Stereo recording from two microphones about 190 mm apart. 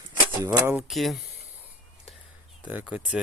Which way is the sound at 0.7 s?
Centre (ahead or behind).